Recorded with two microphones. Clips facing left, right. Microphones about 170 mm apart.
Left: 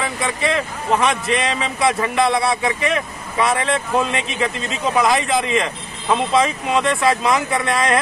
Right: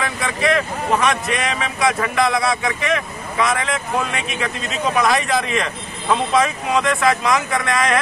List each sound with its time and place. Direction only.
0.2 s speech: 25° left (ahead or behind)